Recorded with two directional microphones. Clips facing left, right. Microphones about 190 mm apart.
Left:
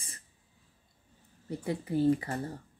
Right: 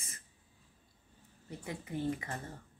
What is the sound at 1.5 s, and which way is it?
Speech, 35° left (ahead or behind).